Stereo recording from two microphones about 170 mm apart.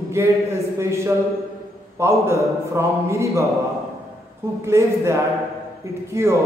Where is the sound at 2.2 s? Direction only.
15° right (ahead or behind).